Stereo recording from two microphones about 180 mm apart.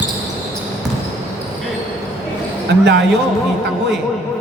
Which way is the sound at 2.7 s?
70° right (ahead or behind).